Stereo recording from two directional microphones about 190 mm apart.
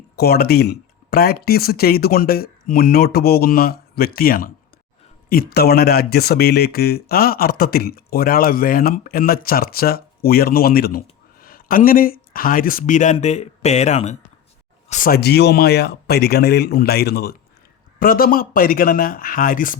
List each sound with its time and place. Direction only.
0.2 s speech: 55° left (ahead or behind)